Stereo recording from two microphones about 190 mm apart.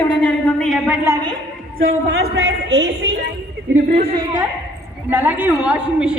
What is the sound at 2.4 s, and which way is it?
Speech, 70° right (ahead or behind).